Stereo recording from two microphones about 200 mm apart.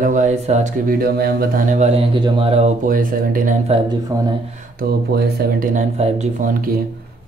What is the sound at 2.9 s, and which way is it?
Speech, 45° right (ahead or behind).